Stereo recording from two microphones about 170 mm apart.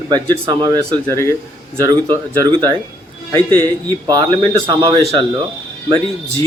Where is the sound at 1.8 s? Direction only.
20° right (ahead or behind).